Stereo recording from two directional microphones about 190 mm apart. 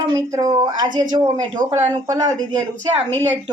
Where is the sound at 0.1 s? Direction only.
20° right (ahead or behind).